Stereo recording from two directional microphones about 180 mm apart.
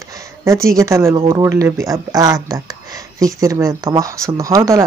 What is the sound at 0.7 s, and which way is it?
Speech, 15° right (ahead or behind).